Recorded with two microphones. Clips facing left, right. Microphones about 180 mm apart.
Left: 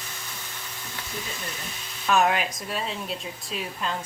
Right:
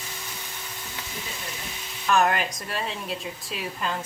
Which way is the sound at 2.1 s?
Centre (ahead or behind).